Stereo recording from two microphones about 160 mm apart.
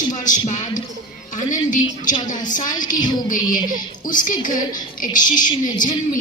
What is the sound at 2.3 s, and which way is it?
Speech, 55° left (ahead or behind).